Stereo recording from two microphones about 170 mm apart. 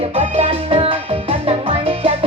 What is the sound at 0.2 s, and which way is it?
Music, 35° right (ahead or behind).